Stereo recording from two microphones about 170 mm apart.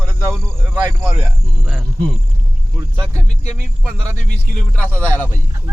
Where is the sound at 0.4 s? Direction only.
15° right (ahead or behind).